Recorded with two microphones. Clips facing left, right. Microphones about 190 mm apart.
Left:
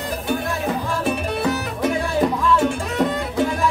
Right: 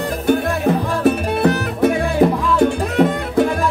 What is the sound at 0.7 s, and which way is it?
Music, 60° right (ahead or behind).